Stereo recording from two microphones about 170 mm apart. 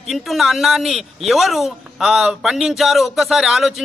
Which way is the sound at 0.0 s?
Centre (ahead or behind).